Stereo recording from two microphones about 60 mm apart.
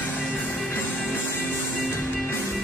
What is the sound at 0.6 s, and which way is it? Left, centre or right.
Music, left.